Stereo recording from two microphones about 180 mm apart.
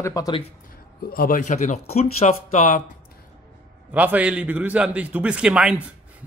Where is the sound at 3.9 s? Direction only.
10° right (ahead or behind).